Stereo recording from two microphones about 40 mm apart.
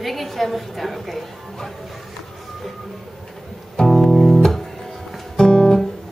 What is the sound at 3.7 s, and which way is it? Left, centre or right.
Music, centre.